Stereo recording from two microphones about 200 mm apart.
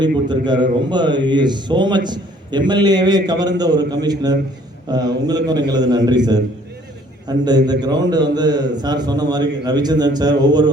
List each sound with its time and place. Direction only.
0.0 s a man's voice: 20° right (ahead or behind)